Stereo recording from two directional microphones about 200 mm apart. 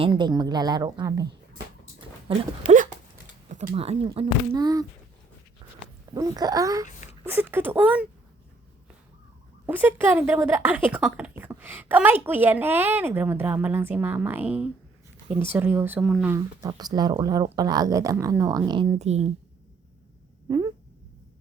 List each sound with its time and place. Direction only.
0.0 s speech: 25° right (ahead or behind)
2.0 s dog: 30° right (ahead or behind)
2.6 s speech: 40° right (ahead or behind)
3.5 s a sound: 45° right (ahead or behind)
3.8 s speech: 30° right (ahead or behind)
6.1 s speech: 15° right (ahead or behind)
6.8 s a sound: 40° left (ahead or behind)
7.3 s speech: 10° right (ahead or behind)
9.6 s speech: 10° right (ahead or behind)
16.3 s speech: 15° right (ahead or behind)
18.9 s speech: 35° right (ahead or behind)